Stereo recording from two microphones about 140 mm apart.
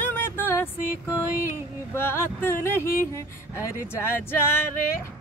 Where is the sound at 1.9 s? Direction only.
15° left (ahead or behind).